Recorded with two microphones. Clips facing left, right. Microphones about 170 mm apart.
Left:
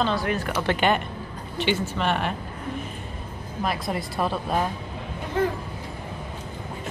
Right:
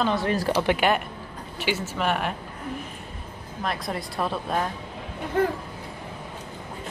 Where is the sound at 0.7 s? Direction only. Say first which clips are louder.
Even; 5° right (ahead or behind).